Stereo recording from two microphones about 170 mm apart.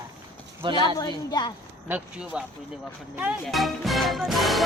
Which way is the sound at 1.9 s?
5° right (ahead or behind).